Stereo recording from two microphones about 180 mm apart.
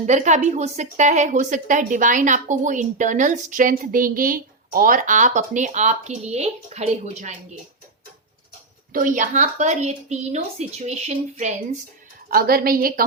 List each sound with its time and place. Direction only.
0.0 s a woman's voice: 40° right (ahead or behind)
8.9 s a woman's voice: 50° right (ahead or behind)
12.3 s a woman's voice: 55° right (ahead or behind)